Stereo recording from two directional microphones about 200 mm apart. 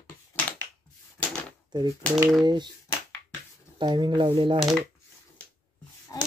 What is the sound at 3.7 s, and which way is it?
Speech, 25° right (ahead or behind).